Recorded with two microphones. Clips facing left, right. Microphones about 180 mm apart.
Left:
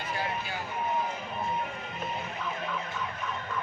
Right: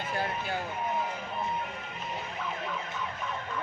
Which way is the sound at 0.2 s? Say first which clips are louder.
Right 3 dB; 55° right (ahead or behind).